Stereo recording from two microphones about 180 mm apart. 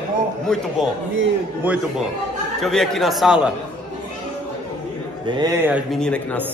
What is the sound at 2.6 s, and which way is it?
Speech, centre (ahead or behind).